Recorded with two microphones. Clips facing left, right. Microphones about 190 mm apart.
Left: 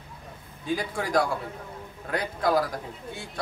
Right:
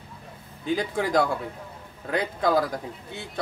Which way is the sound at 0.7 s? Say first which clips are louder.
Right 3 dB; 20° right (ahead or behind).